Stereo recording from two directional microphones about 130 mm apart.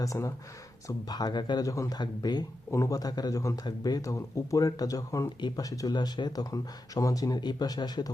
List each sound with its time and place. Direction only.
0.0 s speech: 25° left (ahead or behind)